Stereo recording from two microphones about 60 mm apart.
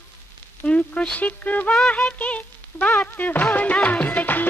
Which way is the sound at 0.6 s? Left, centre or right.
Centre.